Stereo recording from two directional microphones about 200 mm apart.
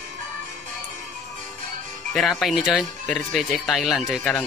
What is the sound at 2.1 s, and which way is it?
Speech, centre (ahead or behind).